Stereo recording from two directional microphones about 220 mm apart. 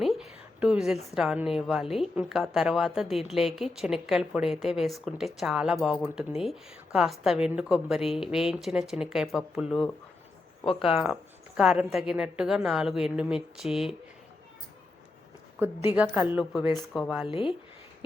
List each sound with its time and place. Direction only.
0.6 s a woman's voice: 5° right (ahead or behind)
10.7 s speech: 25° left (ahead or behind)
10.9 s a woman's voice: centre (ahead or behind)
16.0 s a woman's voice: 5° right (ahead or behind)
17.2 s speech: 25° left (ahead or behind)